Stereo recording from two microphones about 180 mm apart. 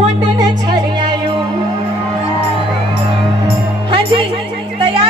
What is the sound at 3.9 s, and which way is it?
Music, 30° right (ahead or behind).